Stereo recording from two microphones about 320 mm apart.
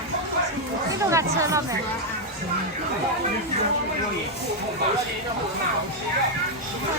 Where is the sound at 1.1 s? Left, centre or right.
Centre.